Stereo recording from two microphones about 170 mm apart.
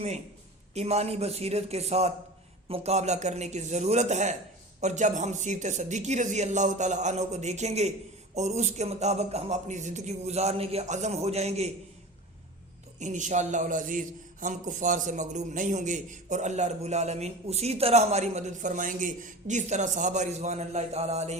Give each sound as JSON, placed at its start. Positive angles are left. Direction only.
{"t": 0.7, "sound": "a man's voice", "side_deg": -40}
{"t": 13.0, "sound": "a man's voice", "side_deg": -45}